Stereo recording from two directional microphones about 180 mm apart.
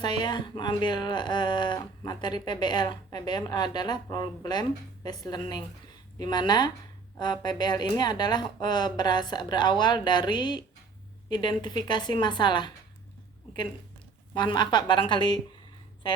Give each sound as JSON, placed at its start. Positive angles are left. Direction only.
{"t": 0.0, "sound": "speech", "side_deg": 25}
{"t": 14.3, "sound": "speech", "side_deg": 25}